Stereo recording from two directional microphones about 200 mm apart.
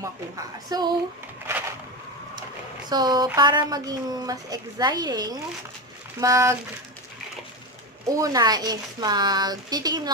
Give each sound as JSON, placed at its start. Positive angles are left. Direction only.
{"t": 0.0, "sound": "a woman's voice", "side_deg": -20}
{"t": 2.9, "sound": "a woman's voice", "side_deg": -20}
{"t": 8.1, "sound": "a woman's voice", "side_deg": -20}